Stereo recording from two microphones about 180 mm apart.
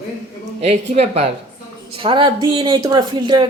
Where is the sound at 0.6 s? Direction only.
35° right (ahead or behind).